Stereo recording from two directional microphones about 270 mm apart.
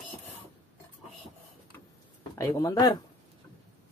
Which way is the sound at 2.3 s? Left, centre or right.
Centre.